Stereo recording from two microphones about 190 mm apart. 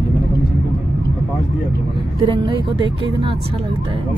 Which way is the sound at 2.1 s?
25° right (ahead or behind).